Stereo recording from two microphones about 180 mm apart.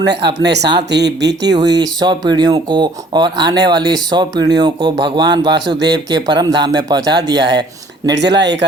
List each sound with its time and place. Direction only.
0.0 s speech: 70° right (ahead or behind)
1.7 s speech: 20° right (ahead or behind)
5.5 s speech: 70° right (ahead or behind)
5.8 s speech: 20° right (ahead or behind)
8.1 s speech: 70° right (ahead or behind)